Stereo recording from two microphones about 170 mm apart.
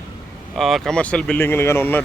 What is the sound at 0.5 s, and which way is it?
Speech, centre (ahead or behind).